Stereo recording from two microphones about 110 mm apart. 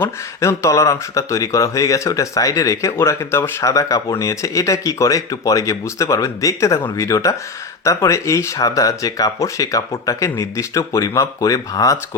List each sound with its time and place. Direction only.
0.0 s speech: 25° left (ahead or behind)